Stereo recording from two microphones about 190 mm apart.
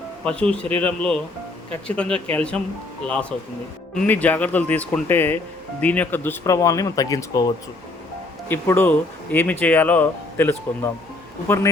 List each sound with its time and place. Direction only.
0.3 s speech: 5° left (ahead or behind)